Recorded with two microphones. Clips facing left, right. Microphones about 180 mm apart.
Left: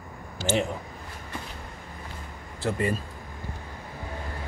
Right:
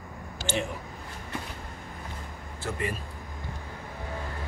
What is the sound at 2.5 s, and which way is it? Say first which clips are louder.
Speech: left 6 dB; 35° left (ahead or behind).